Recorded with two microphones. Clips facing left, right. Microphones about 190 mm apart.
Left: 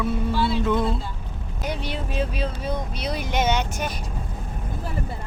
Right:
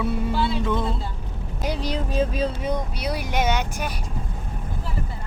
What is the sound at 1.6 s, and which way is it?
Speech, 35° right (ahead or behind).